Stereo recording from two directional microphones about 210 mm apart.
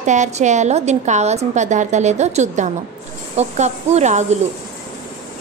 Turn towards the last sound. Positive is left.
turn(degrees=-35)  # may be behind; listen again after turning